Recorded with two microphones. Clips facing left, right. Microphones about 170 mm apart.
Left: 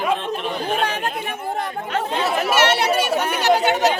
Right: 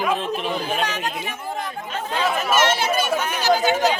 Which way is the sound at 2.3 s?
70° left (ahead or behind).